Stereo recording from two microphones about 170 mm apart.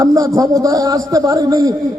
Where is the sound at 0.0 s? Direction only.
20° right (ahead or behind).